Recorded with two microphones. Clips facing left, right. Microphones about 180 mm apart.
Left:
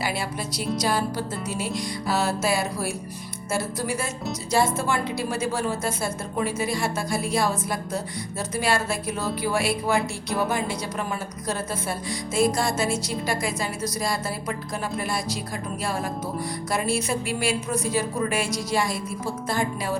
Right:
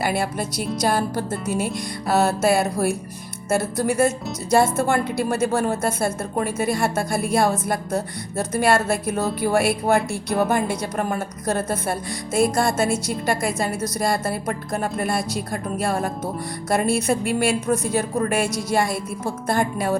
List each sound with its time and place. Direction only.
0.0 s music: 55° right (ahead or behind)
3.5 s a woman's voice: 55° right (ahead or behind)
15.8 s music: 55° right (ahead or behind)
16.6 s a woman's voice: 55° right (ahead or behind)